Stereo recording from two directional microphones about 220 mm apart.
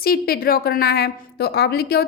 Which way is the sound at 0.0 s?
45° left (ahead or behind).